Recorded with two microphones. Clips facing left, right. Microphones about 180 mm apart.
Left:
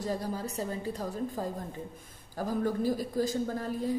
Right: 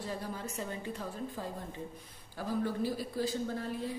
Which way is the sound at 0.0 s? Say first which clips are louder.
Left 6 dB; 40° left (ahead or behind).